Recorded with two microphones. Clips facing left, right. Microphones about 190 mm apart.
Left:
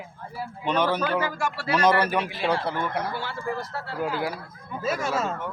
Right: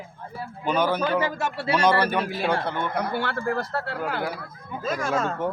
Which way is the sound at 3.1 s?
65° right (ahead or behind).